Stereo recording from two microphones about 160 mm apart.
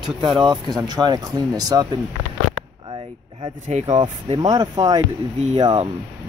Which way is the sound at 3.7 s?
45° right (ahead or behind).